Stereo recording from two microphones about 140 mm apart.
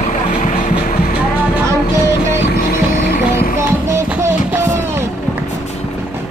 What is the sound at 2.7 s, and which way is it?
Music, 90° left.